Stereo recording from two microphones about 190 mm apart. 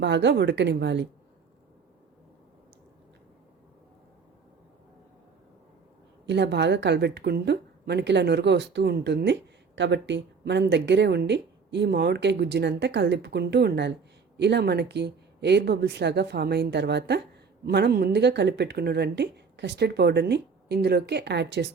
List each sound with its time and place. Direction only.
0.0 s a woman's voice: 65° right (ahead or behind)
6.2 s a woman's voice: 65° right (ahead or behind)